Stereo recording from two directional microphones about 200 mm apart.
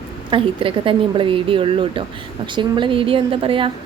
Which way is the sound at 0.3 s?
25° right (ahead or behind).